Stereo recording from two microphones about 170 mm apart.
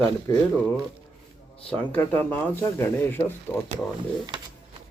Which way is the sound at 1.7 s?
10° left (ahead or behind).